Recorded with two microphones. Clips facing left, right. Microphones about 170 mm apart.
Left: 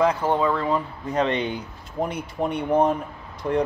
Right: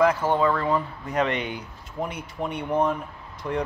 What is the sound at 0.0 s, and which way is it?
Speech, 15° left (ahead or behind).